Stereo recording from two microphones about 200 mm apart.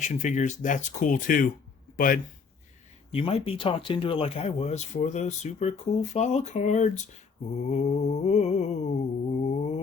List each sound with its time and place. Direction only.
0.0 s speech: 40° left (ahead or behind)
3.2 s speech: 30° left (ahead or behind)